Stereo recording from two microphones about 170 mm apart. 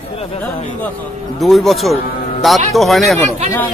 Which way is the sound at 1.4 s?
Centre (ahead or behind).